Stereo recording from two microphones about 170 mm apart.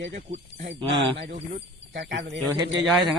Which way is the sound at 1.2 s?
75° right (ahead or behind).